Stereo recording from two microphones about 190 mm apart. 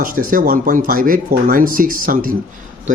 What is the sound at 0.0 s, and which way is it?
Speech, 45° right (ahead or behind).